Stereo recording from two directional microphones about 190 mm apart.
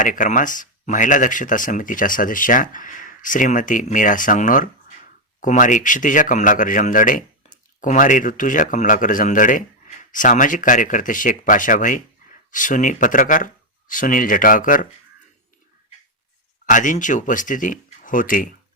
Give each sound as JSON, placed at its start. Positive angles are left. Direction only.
{"t": 0.0, "sound": "speech", "side_deg": 45}
{"t": 16.6, "sound": "speech", "side_deg": 45}